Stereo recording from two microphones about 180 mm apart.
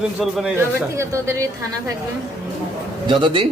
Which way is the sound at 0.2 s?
5° right (ahead or behind).